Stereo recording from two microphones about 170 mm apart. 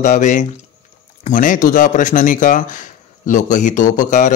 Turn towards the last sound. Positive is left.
turn(degrees=50)  # may be behind; listen again after turning